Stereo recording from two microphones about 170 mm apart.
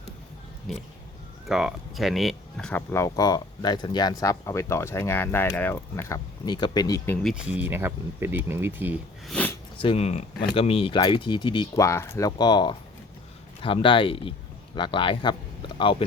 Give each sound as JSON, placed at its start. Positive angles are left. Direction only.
{"t": 0.7, "sound": "speech", "side_deg": 0}
{"t": 2.9, "sound": "speech", "side_deg": 20}
{"t": 7.3, "sound": "speech", "side_deg": -5}
{"t": 9.2, "sound": "a sound", "side_deg": 5}
{"t": 9.7, "sound": "speech", "side_deg": 35}